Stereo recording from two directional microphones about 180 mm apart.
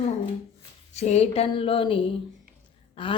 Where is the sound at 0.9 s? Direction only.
35° left (ahead or behind).